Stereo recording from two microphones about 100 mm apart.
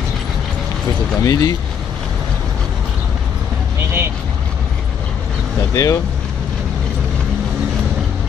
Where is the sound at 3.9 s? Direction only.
25° right (ahead or behind).